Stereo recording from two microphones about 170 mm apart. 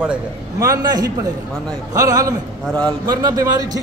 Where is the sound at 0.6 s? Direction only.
20° right (ahead or behind).